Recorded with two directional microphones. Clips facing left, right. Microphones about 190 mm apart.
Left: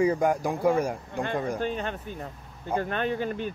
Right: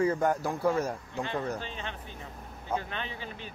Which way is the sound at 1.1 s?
50° left (ahead or behind).